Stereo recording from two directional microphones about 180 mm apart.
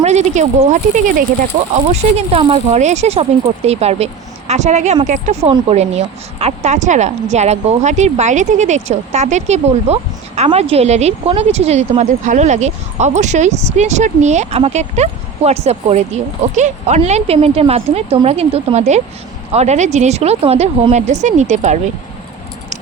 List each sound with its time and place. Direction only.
0.0 s a woman's voice: 40° right (ahead or behind)